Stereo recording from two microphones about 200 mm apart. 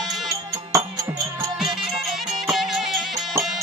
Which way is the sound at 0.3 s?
15° right (ahead or behind).